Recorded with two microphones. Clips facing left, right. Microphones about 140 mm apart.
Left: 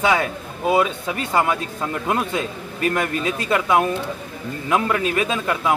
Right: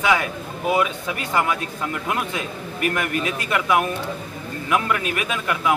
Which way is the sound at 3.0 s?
25° left (ahead or behind).